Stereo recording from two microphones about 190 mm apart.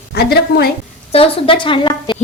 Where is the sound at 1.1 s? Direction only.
30° left (ahead or behind).